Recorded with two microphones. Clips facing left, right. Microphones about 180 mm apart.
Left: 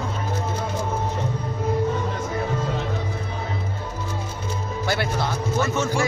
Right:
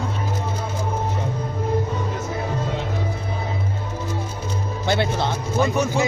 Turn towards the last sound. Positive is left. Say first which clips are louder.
# right 2 dB
turn(degrees=-15)  # may be behind; listen again after turning